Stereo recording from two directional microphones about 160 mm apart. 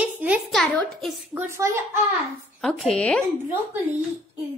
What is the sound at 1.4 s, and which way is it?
Speech, 15° right (ahead or behind).